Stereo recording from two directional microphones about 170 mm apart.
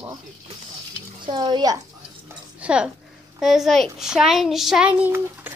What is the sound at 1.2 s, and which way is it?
Speech, 25° right (ahead or behind).